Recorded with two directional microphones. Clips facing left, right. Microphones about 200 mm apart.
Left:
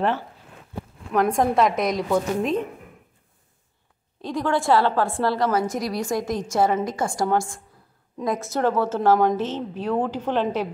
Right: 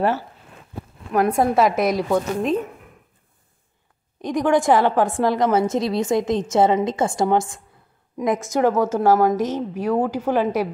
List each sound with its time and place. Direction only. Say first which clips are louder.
1.1 s a woman's voice: right 2 dB; 5° right (ahead or behind)
4.2 s a woman's voice: right 5 dB; 15° right (ahead or behind)